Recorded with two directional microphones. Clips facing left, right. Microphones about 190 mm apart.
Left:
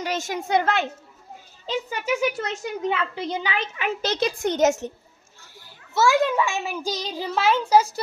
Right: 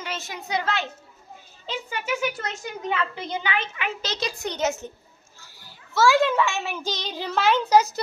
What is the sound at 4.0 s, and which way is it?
Speech, 55° left (ahead or behind).